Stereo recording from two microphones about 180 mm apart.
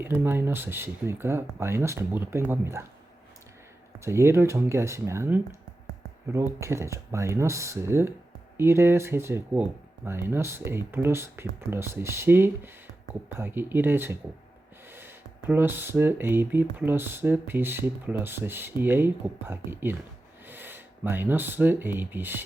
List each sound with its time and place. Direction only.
0.0 s speech: 10° right (ahead or behind)
4.0 s speech: 15° right (ahead or behind)